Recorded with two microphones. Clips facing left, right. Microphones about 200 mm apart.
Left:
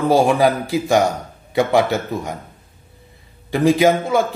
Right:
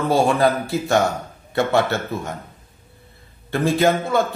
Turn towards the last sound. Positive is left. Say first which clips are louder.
# left 3 dB
turn(degrees=15)  # may be behind; listen again after turning